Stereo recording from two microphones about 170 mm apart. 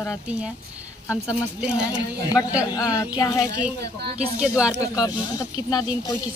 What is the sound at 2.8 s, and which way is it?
Speech, 20° left (ahead or behind).